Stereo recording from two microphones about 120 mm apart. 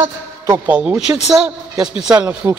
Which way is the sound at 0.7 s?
10° right (ahead or behind).